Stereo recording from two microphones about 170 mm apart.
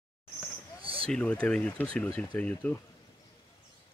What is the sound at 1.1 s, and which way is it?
Speech, 5° left (ahead or behind).